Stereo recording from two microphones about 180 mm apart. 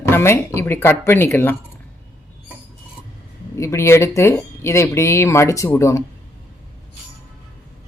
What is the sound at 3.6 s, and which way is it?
Speech, 15° left (ahead or behind).